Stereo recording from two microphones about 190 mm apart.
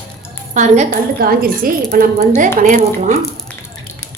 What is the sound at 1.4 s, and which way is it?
A woman's voice, 50° right (ahead or behind).